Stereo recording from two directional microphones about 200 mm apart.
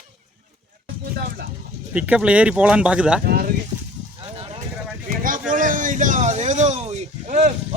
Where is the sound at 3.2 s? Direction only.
50° right (ahead or behind).